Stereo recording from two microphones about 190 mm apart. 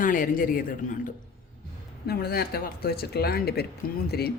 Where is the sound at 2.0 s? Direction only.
55° left (ahead or behind).